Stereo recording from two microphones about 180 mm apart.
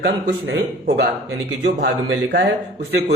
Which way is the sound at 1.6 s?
70° right (ahead or behind).